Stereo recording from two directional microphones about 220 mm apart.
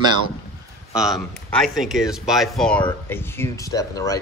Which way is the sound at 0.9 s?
Centre (ahead or behind).